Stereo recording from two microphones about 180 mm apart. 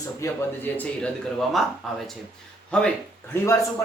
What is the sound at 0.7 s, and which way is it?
Speech, 5° left (ahead or behind).